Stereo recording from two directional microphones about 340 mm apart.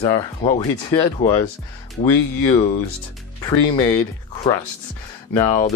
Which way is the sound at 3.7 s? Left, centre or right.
Centre.